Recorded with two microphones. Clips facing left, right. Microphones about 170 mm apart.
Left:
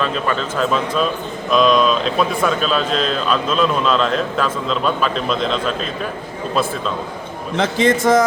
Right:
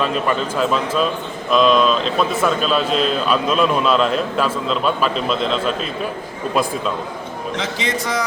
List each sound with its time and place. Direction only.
0.0 s a man's voice: 5° right (ahead or behind)
7.5 s a man's voice: 50° left (ahead or behind)